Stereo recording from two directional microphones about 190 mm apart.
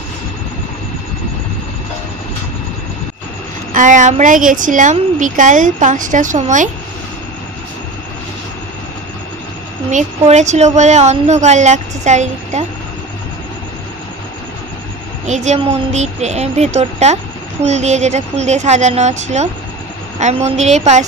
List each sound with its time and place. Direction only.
3.7 s a woman's voice: 40° right (ahead or behind)
9.8 s a woman's voice: 40° right (ahead or behind)
15.2 s a woman's voice: 40° right (ahead or behind)